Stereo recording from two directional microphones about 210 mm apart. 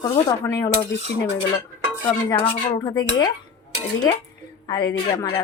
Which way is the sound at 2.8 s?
20° left (ahead or behind).